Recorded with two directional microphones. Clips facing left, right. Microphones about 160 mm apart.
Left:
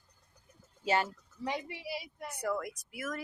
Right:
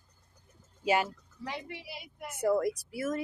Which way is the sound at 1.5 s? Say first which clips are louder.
Left 3 dB; 10° left (ahead or behind).